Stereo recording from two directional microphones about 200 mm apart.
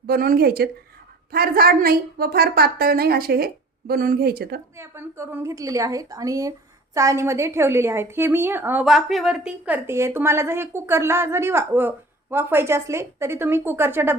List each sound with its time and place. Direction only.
0.1 s a woman's voice: 50° right (ahead or behind)
4.8 s a woman's voice: 15° right (ahead or behind)